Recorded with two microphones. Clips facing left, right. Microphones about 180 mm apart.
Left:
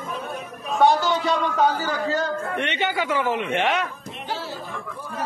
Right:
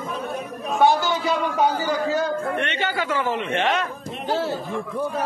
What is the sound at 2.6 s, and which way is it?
A man's voice, 20° left (ahead or behind).